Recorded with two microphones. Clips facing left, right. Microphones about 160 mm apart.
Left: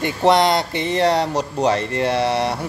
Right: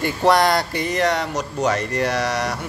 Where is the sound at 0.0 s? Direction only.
20° left (ahead or behind).